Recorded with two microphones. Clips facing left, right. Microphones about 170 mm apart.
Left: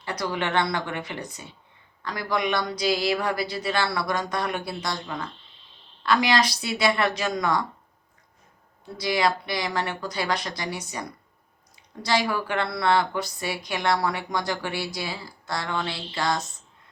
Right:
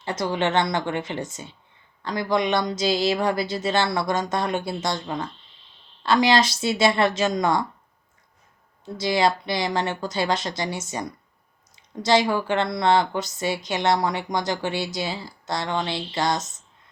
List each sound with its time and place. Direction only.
0.0 s a woman's voice: 25° right (ahead or behind)
8.8 s a woman's voice: 25° right (ahead or behind)